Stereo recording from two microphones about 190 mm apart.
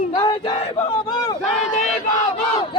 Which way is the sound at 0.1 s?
25° left (ahead or behind).